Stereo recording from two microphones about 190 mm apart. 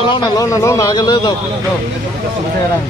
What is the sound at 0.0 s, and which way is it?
Speech, 25° left (ahead or behind).